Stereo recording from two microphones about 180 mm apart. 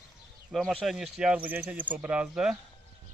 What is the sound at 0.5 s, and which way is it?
Speech, centre (ahead or behind).